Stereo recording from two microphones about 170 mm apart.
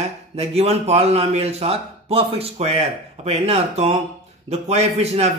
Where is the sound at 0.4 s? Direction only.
40° right (ahead or behind).